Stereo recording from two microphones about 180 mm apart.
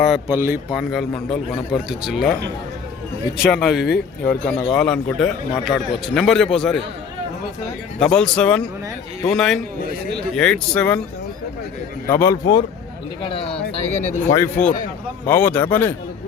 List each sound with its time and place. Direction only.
0.3 s speech: 10° right (ahead or behind)
0.8 s a man's voice: centre (ahead or behind)
7.9 s a man's voice: 5° left (ahead or behind)
9.9 s speech: 60° right (ahead or behind)
10.3 s a man's voice: 5° left (ahead or behind)
12.0 s speech: 15° left (ahead or behind)
13.2 s speech: 30° left (ahead or behind)
14.3 s speech: 15° left (ahead or behind)